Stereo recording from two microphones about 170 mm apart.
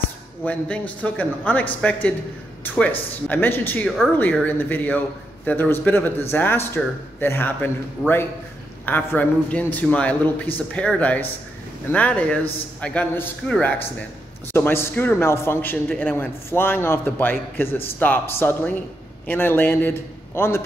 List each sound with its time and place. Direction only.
0.5 s a man's voice: 10° left (ahead or behind)
8.8 s a man's voice: 10° left (ahead or behind)